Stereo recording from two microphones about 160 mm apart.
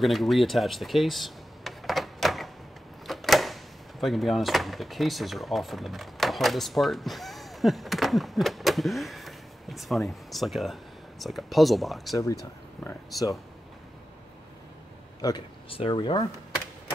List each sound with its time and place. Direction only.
0.0 s a sound: centre (ahead or behind)
4.0 s speech: centre (ahead or behind)
12.8 s speech: 20° left (ahead or behind)
15.2 s speech: 30° left (ahead or behind)